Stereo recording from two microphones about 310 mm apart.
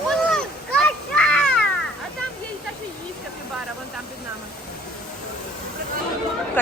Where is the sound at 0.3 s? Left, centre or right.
Centre.